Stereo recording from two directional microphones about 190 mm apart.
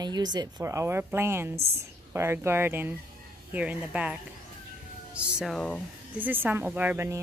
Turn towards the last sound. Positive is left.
turn(degrees=-15)  # may be behind; listen again after turning